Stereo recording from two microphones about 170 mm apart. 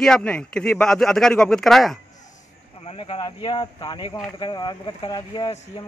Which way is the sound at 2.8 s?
35° left (ahead or behind).